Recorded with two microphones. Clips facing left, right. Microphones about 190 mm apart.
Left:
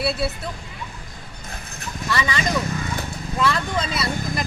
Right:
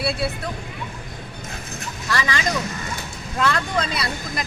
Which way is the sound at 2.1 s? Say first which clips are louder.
Even; centre (ahead or behind).